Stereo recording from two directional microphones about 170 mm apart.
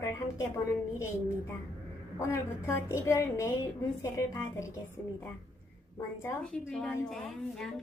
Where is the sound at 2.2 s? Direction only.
15° left (ahead or behind).